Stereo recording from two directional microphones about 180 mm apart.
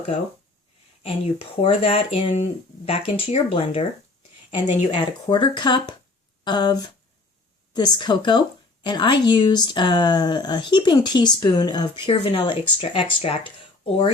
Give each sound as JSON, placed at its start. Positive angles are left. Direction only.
{"t": 1.0, "sound": "speech", "side_deg": 30}
{"t": 7.9, "sound": "speech", "side_deg": 25}